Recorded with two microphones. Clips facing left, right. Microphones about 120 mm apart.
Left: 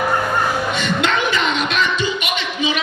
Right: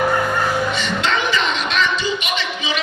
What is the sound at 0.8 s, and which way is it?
Music, 50° left (ahead or behind).